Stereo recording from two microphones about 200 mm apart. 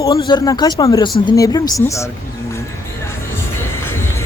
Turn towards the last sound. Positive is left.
turn(degrees=10)  # may be behind; listen again after turning